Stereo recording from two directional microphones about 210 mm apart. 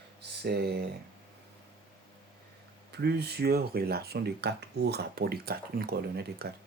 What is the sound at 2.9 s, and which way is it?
Speech, 50° right (ahead or behind).